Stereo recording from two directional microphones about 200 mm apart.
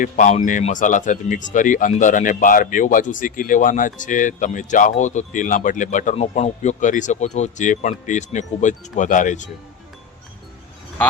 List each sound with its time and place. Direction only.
0.0 s speech: 40° left (ahead or behind)